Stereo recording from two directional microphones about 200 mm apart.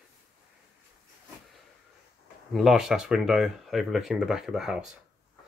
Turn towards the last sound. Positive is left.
turn(degrees=-5)  # may be behind; listen again after turning